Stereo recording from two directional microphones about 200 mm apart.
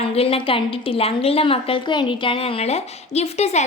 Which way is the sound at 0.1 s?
30° left (ahead or behind).